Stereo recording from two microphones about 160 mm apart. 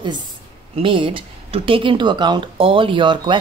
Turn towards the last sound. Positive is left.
turn(degrees=-30)  # may be behind; listen again after turning